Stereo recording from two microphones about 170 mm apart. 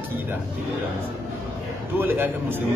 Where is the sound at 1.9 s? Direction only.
10° right (ahead or behind).